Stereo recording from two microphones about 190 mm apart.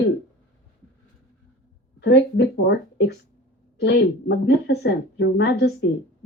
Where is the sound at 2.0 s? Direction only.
65° left (ahead or behind).